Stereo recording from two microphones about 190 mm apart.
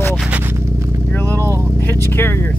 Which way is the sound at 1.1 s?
10° left (ahead or behind).